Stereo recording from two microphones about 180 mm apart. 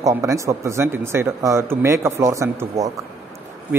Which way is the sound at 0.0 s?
15° right (ahead or behind).